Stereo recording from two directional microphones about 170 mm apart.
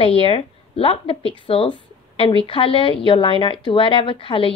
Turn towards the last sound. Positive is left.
turn(degrees=30)  # may be behind; listen again after turning